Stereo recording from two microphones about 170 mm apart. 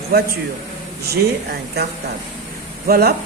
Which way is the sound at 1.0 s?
70° right (ahead or behind).